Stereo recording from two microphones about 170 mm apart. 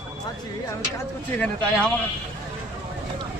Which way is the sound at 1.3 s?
5° left (ahead or behind).